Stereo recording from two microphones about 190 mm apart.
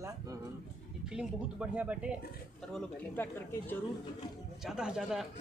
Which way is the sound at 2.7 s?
10° left (ahead or behind).